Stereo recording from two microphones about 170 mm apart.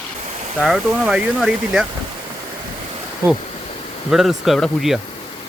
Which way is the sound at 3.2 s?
15° right (ahead or behind).